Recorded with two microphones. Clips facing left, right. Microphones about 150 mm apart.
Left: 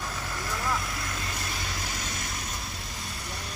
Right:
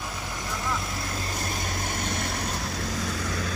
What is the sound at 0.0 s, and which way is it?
Vehicle, 15° right (ahead or behind).